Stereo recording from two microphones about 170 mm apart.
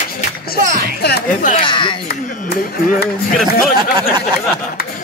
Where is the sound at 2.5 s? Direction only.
70° left (ahead or behind).